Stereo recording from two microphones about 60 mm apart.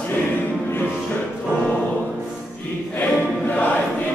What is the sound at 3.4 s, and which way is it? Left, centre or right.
Choir, left.